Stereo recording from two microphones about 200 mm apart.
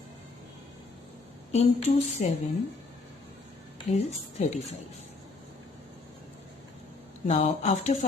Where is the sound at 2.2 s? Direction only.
35° left (ahead or behind).